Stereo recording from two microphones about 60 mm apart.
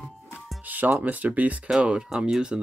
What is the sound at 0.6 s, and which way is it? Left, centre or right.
Speech, right.